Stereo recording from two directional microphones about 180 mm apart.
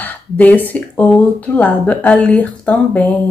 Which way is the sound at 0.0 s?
10° left (ahead or behind).